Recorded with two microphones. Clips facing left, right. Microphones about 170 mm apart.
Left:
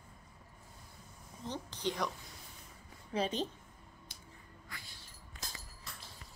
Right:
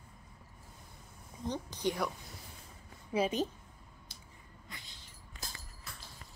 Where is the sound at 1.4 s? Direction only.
15° right (ahead or behind).